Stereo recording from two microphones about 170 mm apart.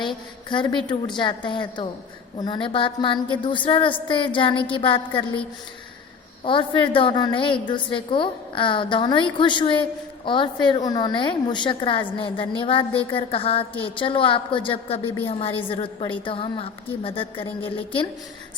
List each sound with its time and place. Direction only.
0.0 s a woman's voice: 30° left (ahead or behind)
6.4 s a woman's voice: 30° left (ahead or behind)